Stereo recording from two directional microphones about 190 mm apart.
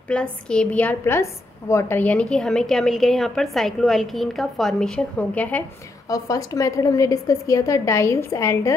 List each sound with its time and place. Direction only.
0.1 s a woman's voice: 5° left (ahead or behind)
6.0 s a woman's voice: 20° left (ahead or behind)